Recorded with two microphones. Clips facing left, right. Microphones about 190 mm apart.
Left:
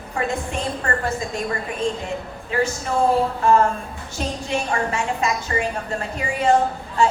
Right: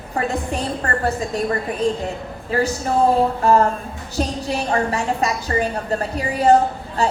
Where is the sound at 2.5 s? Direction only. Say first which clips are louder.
Right 2 dB; 40° right (ahead or behind).